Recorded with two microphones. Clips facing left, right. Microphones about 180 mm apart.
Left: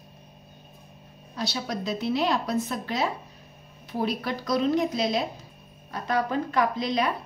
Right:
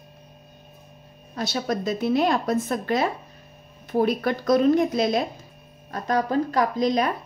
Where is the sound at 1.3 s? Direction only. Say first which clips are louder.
Right 5 dB; 50° right (ahead or behind).